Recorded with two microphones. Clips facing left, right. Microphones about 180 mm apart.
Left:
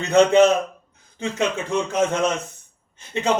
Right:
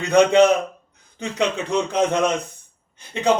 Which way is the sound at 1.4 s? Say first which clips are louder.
Right 2 dB; 15° right (ahead or behind).